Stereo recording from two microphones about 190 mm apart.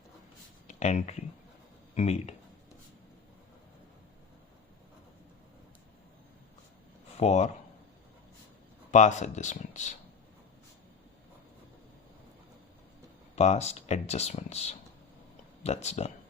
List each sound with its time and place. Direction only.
0.7 s speech: 35° left (ahead or behind)
7.2 s speech: 35° left (ahead or behind)
8.9 s speech: 40° left (ahead or behind)
13.3 s speech: 35° left (ahead or behind)